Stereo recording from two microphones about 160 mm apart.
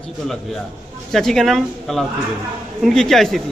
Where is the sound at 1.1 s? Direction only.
Centre (ahead or behind).